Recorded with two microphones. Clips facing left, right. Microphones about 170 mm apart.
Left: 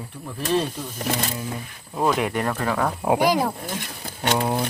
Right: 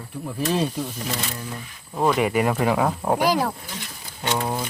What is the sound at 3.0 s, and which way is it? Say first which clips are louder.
Speech: left 1 dB; 10° left (ahead or behind).